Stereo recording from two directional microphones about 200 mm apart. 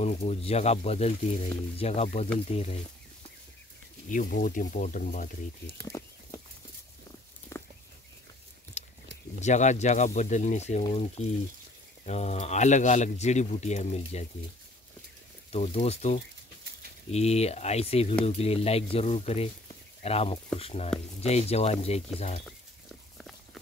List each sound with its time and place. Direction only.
0.0 s a man's voice: 35° left (ahead or behind)
4.1 s a man's voice: 40° left (ahead or behind)
5.9 s a sound: 15° left (ahead or behind)
7.5 s livestock: 15° left (ahead or behind)
8.8 s a sound: 35° left (ahead or behind)
9.4 s a man's voice: 35° left (ahead or behind)
15.5 s a man's voice: 30° left (ahead or behind)
23.1 s horse: centre (ahead or behind)